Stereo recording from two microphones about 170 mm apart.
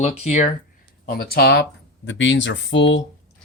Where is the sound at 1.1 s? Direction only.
65° left (ahead or behind); by 3.0 s 90° left.